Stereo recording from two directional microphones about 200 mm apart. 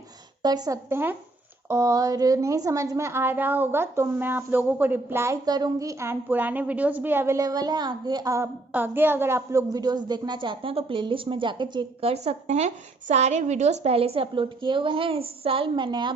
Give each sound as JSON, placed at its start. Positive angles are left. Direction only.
{"t": 0.4, "sound": "a woman's voice", "side_deg": -20}